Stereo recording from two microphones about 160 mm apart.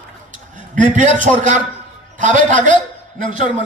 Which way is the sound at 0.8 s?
55° right (ahead or behind).